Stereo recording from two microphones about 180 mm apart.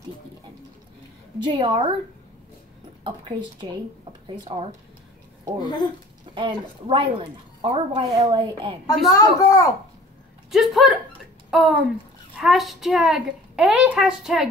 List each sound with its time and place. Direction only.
1.4 s a woman's voice: 25° right (ahead or behind)
3.0 s a sound: 25° right (ahead or behind)
4.5 s a woman's voice: 30° right (ahead or behind)
5.6 s a woman's voice: 25° left (ahead or behind)
6.3 s a woman's voice: 25° right (ahead or behind)
9.1 s a woman's voice: 20° left (ahead or behind)
10.5 s a woman's voice: centre (ahead or behind)